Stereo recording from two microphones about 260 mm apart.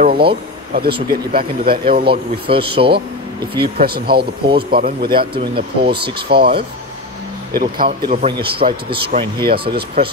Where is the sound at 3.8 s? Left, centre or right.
Right.